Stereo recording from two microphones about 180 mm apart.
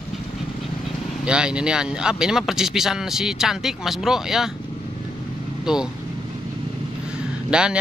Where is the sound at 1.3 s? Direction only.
5° right (ahead or behind).